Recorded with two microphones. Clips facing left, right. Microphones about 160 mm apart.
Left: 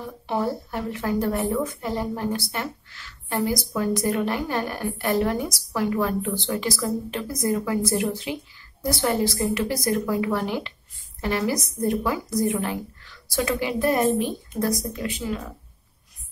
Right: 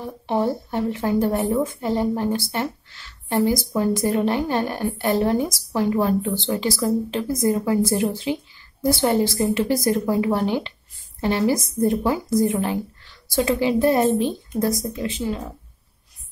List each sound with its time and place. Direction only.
0.0 s a woman's voice: 25° right (ahead or behind)